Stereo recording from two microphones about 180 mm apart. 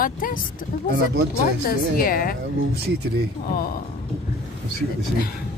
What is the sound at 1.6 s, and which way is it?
Speech, 55° left (ahead or behind).